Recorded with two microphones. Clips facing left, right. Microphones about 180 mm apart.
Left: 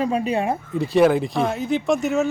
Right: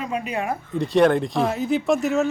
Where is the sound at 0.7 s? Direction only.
5° left (ahead or behind).